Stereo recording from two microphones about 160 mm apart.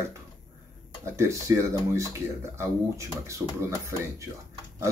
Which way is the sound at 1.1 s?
15° right (ahead or behind).